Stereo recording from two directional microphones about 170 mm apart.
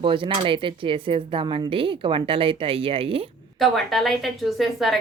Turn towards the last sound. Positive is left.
turn(degrees=0)  # may be behind; listen again after turning